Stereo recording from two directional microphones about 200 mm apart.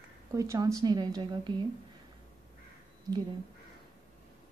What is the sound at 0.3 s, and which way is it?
A woman's voice, 15° right (ahead or behind).